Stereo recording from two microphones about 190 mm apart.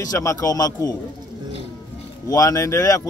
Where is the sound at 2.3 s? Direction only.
15° left (ahead or behind).